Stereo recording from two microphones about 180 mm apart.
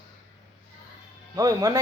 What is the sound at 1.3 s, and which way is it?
Speech, 20° right (ahead or behind).